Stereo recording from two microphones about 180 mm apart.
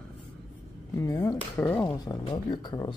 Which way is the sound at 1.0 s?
15° left (ahead or behind).